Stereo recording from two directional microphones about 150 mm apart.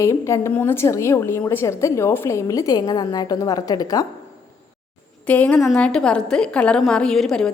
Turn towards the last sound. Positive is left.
turn(degrees=5)  # may be behind; listen again after turning